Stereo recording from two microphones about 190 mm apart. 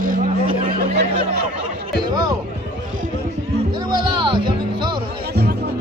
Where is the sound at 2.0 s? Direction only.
20° right (ahead or behind).